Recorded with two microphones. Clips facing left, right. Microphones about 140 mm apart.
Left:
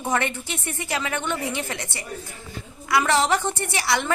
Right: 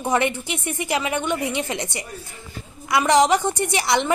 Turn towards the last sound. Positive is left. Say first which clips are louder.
# right 4 dB
turn(degrees=-20)  # may be behind; listen again after turning